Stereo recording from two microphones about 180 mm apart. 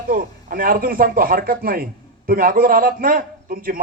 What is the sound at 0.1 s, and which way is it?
A man's voice, 50° right (ahead or behind).